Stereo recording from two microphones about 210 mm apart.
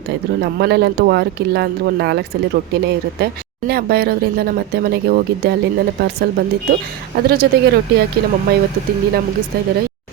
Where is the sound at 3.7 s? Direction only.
50° right (ahead or behind).